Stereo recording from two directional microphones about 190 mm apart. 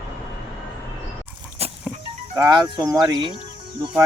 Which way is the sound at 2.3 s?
20° right (ahead or behind).